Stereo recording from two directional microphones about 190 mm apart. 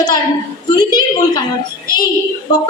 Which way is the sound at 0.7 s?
20° left (ahead or behind).